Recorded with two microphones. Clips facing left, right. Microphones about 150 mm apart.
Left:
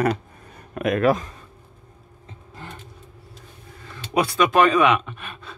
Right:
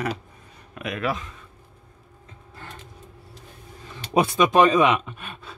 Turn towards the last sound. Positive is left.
turn(degrees=-20)  # may be behind; listen again after turning